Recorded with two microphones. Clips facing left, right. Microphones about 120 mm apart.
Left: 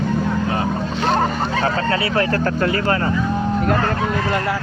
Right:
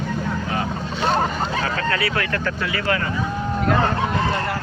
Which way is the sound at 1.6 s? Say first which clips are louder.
Left 5 dB; 30° left (ahead or behind).